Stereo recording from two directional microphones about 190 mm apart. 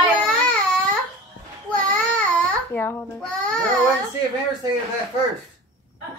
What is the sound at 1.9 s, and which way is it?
Babbling, 10° left (ahead or behind).